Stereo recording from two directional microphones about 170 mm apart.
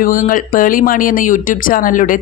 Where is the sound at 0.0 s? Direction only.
55° left (ahead or behind).